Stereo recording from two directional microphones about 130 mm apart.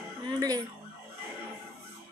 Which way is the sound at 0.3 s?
30° right (ahead or behind).